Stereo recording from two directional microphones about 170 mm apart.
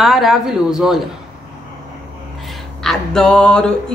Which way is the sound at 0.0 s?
Centre (ahead or behind).